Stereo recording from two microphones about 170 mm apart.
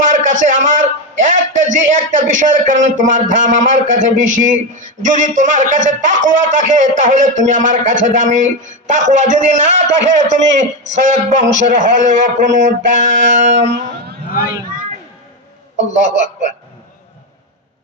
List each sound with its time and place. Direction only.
0.0 s a man's voice: 45° right (ahead or behind)
15.9 s a man's voice: 45° right (ahead or behind)